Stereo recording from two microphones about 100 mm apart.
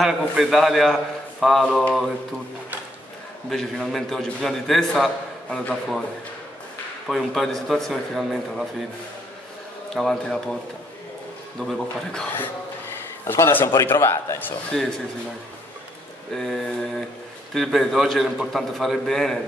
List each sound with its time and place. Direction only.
0.0 s a man's voice: centre (ahead or behind)
3.4 s a man's voice: 5° left (ahead or behind)
7.1 s a man's voice: centre (ahead or behind)
9.9 s a man's voice: 5° left (ahead or behind)
11.6 s speech: 5° left (ahead or behind)
13.3 s a man's voice: 20° left (ahead or behind)
14.7 s a man's voice: 5° left (ahead or behind)
16.3 s a man's voice: 5° left (ahead or behind)